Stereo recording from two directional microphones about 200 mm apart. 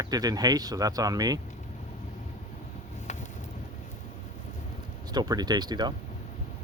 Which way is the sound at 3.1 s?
35° left (ahead or behind).